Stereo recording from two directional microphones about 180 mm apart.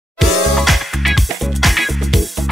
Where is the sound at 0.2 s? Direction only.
Centre (ahead or behind).